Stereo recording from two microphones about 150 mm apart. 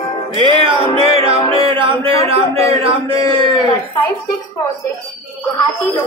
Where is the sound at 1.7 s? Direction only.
35° right (ahead or behind).